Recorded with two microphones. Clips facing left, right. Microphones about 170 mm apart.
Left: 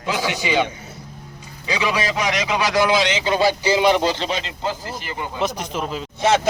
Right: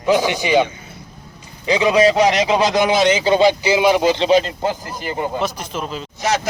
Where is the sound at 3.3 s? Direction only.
20° right (ahead or behind).